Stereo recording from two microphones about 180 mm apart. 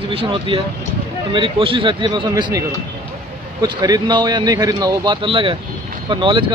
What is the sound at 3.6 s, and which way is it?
Speech, 25° right (ahead or behind).